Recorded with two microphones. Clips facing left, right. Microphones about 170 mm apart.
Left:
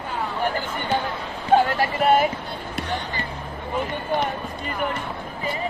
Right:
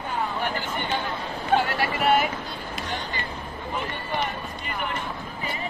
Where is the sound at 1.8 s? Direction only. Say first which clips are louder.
Left 3 dB; 40° left (ahead or behind).